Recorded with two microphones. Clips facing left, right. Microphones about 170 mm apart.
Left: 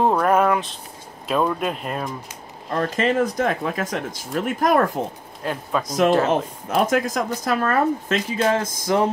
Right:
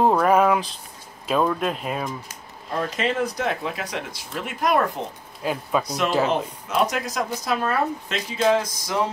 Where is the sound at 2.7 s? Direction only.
45° left (ahead or behind).